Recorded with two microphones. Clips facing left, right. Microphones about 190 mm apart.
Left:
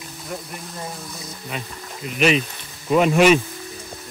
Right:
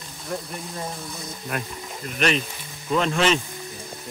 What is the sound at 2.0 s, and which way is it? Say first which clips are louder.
Speech: left 5 dB; 5° left (ahead or behind).